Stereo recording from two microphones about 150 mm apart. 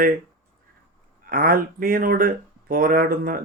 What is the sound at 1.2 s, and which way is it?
Speech, 75° right (ahead or behind).